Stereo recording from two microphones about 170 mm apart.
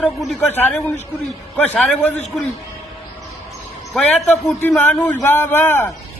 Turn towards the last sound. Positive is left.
turn(degrees=10)  # may be behind; listen again after turning